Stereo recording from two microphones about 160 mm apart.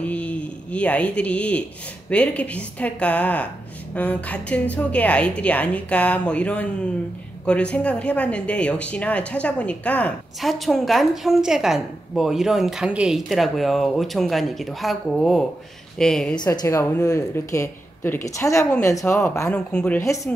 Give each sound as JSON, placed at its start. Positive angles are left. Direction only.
{"t": 0.0, "sound": "a woman's voice", "side_deg": 10}
{"t": 16.3, "sound": "speech", "side_deg": 20}
{"t": 19.5, "sound": "a woman's voice", "side_deg": 5}
{"t": 20.0, "sound": "a woman's voice", "side_deg": 20}